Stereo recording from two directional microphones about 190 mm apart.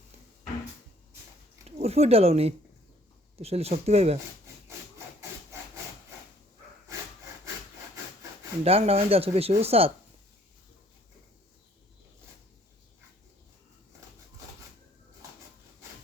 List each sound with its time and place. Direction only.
1.6 s speech: 35° right (ahead or behind)
8.6 s speech: 30° right (ahead or behind)